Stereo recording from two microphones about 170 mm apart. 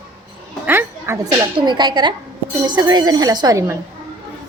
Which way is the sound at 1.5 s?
25° right (ahead or behind).